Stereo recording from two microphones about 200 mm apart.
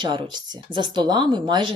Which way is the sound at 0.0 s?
25° right (ahead or behind).